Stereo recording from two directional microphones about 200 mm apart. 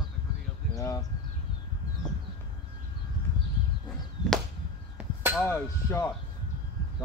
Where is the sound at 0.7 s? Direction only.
15° left (ahead or behind).